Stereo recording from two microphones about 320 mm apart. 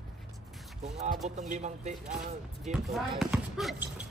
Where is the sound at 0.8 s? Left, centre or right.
Right.